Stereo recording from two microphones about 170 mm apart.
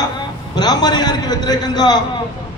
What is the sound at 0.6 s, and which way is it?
A man's voice, 25° left (ahead or behind).